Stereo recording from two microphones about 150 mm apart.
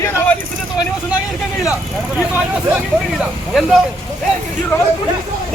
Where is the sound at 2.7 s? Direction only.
Centre (ahead or behind).